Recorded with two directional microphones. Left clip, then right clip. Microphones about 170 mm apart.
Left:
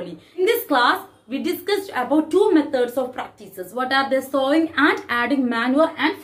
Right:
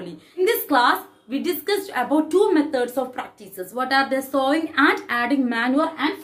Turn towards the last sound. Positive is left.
turn(degrees=-10)  # may be behind; listen again after turning